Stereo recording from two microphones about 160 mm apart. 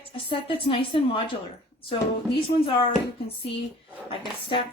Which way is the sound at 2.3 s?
35° left (ahead or behind).